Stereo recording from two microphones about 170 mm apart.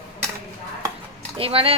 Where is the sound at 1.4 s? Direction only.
35° right (ahead or behind).